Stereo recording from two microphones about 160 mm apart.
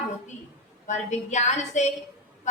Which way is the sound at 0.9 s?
50° left (ahead or behind).